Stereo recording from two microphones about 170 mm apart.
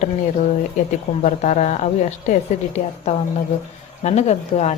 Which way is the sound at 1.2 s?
45° left (ahead or behind).